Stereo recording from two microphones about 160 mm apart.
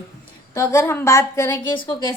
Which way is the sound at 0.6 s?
15° left (ahead or behind).